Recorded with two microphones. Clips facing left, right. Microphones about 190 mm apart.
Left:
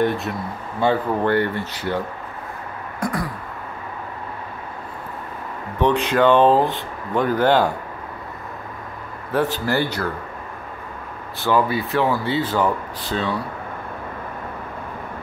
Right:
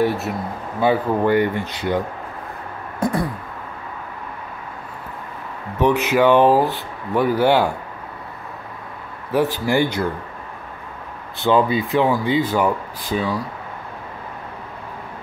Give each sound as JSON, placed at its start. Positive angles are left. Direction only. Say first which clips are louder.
{"t": 0.0, "sound": "speech", "louder": "right 1 dB", "side_deg": -5}
{"t": 3.0, "sound": "a sound", "louder": "right 4 dB", "side_deg": -25}
{"t": 5.8, "sound": "speech", "louder": "right 1 dB", "side_deg": -10}
{"t": 9.3, "sound": "speech", "louder": "right 2 dB", "side_deg": -10}
{"t": 11.4, "sound": "speech", "louder": "right 3 dB", "side_deg": -20}